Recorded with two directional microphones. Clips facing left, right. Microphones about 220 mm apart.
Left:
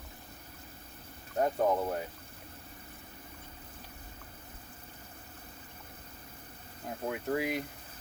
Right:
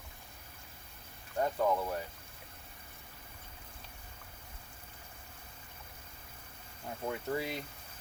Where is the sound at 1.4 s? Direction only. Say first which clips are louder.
Left 3 dB; 20° left (ahead or behind).